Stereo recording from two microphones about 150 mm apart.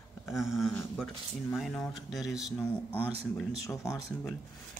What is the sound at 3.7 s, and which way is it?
Speech, 20° left (ahead or behind).